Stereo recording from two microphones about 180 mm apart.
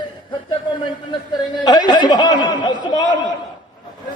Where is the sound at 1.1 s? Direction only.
25° left (ahead or behind).